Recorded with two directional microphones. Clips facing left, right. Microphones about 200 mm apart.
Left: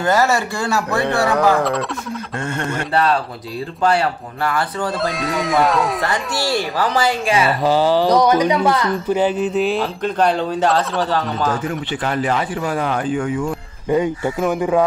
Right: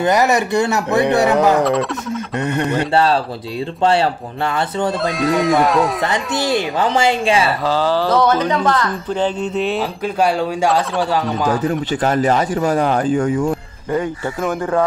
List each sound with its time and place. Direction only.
0.0 s speech: 20° right (ahead or behind)
1.6 s speech: centre (ahead or behind)
2.4 s speech: 20° right (ahead or behind)
5.0 s speech: centre (ahead or behind)
6.0 s speech: 20° right (ahead or behind)
7.6 s speech: 15° left (ahead or behind); by 11.6 s 10° right (ahead or behind)
11.6 s speech: 40° right (ahead or behind)
13.8 s speech: 15° left (ahead or behind)